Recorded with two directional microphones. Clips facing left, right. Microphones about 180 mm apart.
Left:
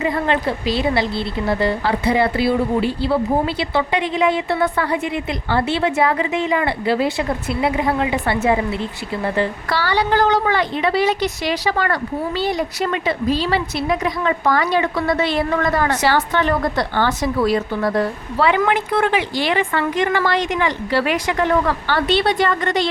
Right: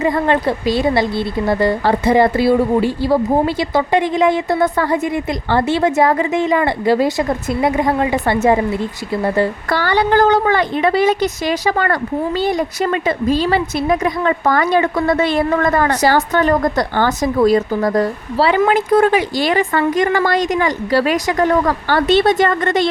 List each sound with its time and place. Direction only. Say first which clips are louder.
0.0 s a woman's voice: right 4 dB; 45° right (ahead or behind)